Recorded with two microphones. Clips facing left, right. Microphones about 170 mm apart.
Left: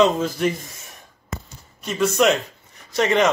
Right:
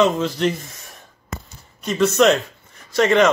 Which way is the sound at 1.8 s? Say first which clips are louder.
Right 3 dB; 5° left (ahead or behind).